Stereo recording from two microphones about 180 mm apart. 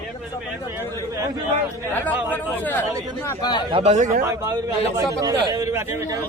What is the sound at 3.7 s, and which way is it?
Speech, 35° right (ahead or behind).